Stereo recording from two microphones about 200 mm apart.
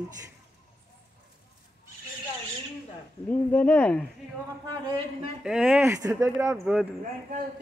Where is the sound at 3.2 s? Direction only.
10° left (ahead or behind).